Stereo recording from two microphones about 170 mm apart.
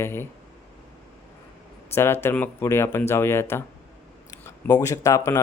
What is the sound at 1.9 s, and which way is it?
Speech, 15° left (ahead or behind).